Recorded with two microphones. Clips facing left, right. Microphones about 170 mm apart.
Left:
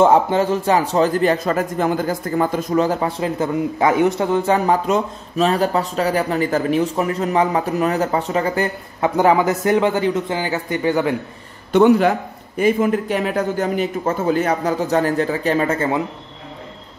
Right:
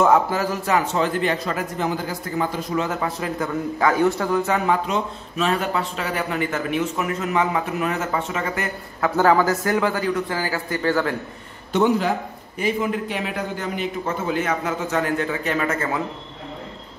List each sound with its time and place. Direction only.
0.0 s a man's voice: 30° left (ahead or behind)
9.1 s a man's voice: 20° left (ahead or behind)
11.7 s a man's voice: 60° left (ahead or behind)
12.5 s a man's voice: 50° left (ahead or behind); by 16.0 s 30° left (ahead or behind)